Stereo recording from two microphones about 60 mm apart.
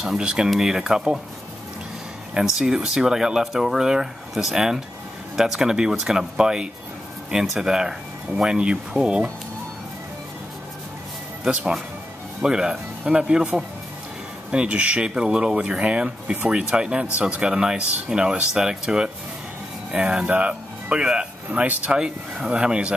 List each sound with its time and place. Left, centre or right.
0.0 s speech: centre
2.3 s speech: centre
11.4 s speech: centre
14.5 s speech: centre